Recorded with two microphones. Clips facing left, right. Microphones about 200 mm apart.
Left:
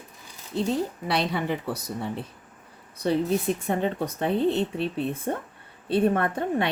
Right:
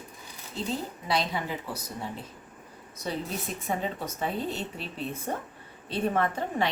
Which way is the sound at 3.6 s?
60° left (ahead or behind).